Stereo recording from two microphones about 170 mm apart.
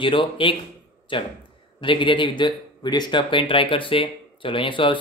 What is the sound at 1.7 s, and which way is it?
Speech, 30° left (ahead or behind).